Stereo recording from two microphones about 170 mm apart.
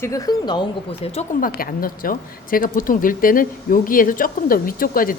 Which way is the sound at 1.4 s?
60° left (ahead or behind).